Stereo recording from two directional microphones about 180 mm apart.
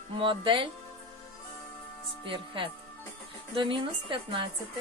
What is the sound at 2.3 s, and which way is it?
Speech, 30° right (ahead or behind).